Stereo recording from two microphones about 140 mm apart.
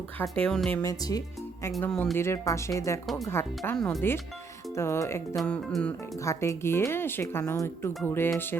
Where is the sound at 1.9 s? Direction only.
5° left (ahead or behind).